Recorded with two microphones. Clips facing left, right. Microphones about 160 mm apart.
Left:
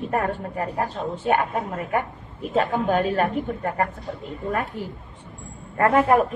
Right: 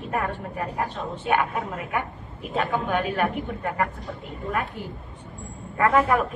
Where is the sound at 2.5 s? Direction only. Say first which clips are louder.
Left 4 dB; 40° left (ahead or behind).